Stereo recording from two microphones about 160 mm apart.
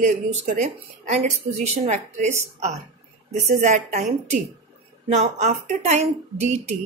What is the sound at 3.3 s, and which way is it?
Speech, 45° right (ahead or behind).